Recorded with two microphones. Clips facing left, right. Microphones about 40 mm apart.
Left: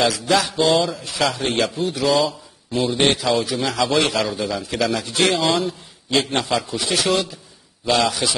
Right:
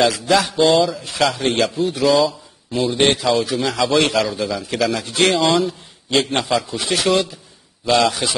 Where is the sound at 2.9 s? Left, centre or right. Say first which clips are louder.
Right 2 dB; right.